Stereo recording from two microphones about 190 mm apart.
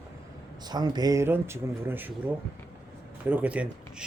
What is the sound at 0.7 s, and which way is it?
Speech, 20° right (ahead or behind).